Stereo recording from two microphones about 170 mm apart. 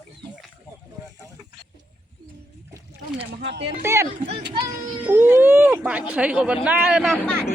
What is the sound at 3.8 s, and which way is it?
Speech, 15° right (ahead or behind).